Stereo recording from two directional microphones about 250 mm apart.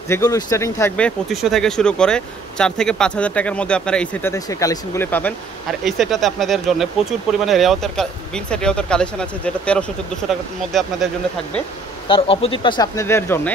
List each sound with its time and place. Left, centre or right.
0.1 s speech: centre
12.1 s speech: left